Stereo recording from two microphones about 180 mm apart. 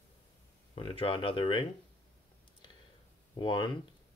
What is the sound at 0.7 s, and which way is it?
Speech, 30° left (ahead or behind).